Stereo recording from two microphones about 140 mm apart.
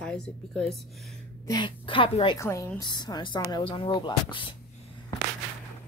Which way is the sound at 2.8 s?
30° left (ahead or behind).